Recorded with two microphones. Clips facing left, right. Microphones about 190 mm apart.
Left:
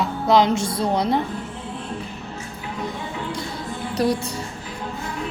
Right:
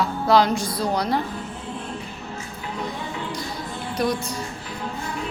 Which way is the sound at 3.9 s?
35° left (ahead or behind).